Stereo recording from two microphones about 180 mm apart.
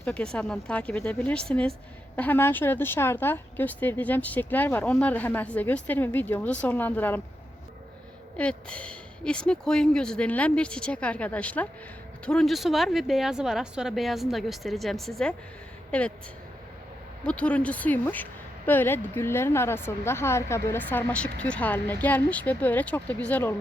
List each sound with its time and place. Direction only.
0.0 s speech: 5° left (ahead or behind)
8.4 s speech: 5° left (ahead or behind)
17.2 s speech: 5° left (ahead or behind)